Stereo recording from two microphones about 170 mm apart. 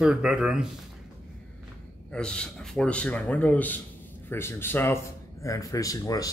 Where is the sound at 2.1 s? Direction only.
5° left (ahead or behind).